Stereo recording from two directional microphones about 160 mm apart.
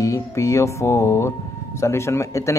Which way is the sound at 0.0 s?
20° left (ahead or behind).